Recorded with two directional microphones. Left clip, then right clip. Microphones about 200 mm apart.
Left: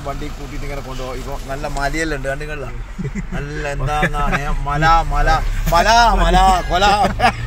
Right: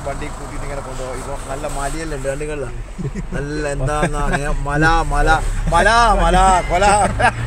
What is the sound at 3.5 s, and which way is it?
A man's voice, 15° right (ahead or behind).